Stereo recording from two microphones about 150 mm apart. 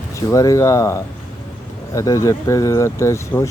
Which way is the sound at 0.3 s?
20° left (ahead or behind).